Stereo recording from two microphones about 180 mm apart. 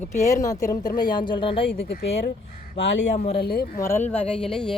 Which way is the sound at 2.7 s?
75° left (ahead or behind).